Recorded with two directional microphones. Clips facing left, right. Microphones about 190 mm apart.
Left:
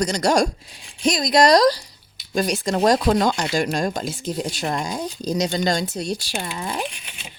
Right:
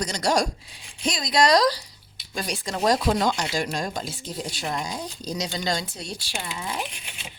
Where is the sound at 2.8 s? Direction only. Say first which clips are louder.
Left 4 dB; 50° left (ahead or behind).